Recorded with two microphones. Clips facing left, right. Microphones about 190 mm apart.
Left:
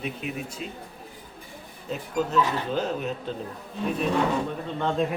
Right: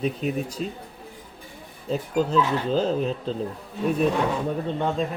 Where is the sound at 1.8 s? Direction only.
30° right (ahead or behind).